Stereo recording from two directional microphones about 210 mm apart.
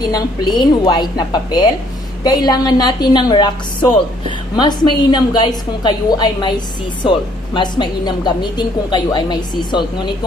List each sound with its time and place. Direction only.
0.0 s a woman's voice: 20° left (ahead or behind)